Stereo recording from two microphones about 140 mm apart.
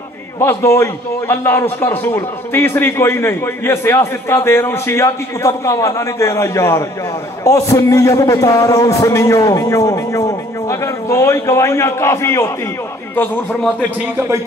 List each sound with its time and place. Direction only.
0.4 s a man's voice: 20° left (ahead or behind)